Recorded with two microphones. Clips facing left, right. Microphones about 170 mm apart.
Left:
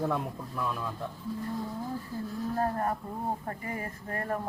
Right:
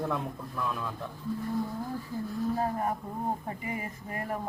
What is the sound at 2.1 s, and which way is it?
Speech, 15° right (ahead or behind).